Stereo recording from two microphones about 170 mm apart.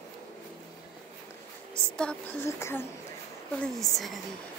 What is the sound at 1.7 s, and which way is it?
Speech, 5° left (ahead or behind).